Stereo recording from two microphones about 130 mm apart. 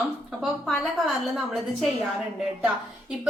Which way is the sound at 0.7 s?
Centre (ahead or behind).